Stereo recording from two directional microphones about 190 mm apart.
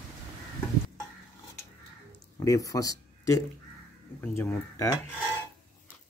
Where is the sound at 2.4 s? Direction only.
20° left (ahead or behind).